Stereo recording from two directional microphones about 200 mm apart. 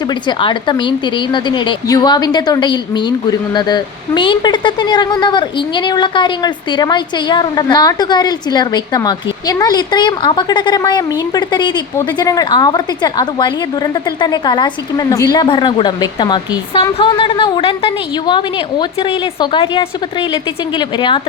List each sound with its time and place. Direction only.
0.1 s a woman's voice: 25° left (ahead or behind)